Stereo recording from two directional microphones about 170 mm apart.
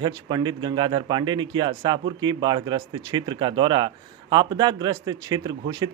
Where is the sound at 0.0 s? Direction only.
25° right (ahead or behind).